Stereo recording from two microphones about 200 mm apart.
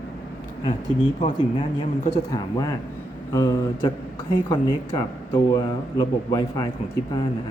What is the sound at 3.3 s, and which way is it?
Speech, 15° left (ahead or behind).